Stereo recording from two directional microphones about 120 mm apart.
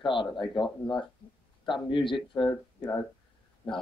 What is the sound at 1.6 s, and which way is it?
Speech, 40° left (ahead or behind).